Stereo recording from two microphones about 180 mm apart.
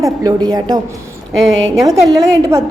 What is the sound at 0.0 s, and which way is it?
A woman's voice, 20° right (ahead or behind).